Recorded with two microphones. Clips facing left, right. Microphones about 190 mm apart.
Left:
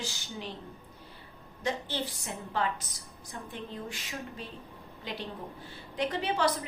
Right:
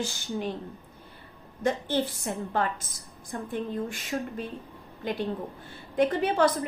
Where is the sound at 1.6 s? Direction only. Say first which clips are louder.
Right 7 dB; 50° right (ahead or behind).